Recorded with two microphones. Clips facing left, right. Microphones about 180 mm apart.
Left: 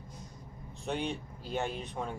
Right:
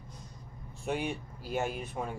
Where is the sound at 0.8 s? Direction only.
10° right (ahead or behind).